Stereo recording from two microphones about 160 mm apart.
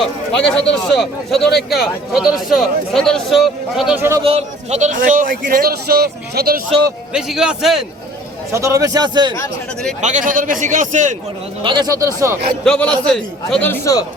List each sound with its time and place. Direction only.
0.3 s speech: 5° left (ahead or behind)
3.9 s a man's voice: 15° right (ahead or behind)
4.2 s a man's voice: 35° right (ahead or behind); by 6.6 s 75° right (ahead or behind)
7.1 s speech: 5° right (ahead or behind)
8.5 s a man's voice: 20° right (ahead or behind)
10.0 s a man's voice: 50° right (ahead or behind)
11.6 s a man's voice: 25° right (ahead or behind)
12.6 s speech: 5° left (ahead or behind)
13.7 s a man's voice: 20° left (ahead or behind)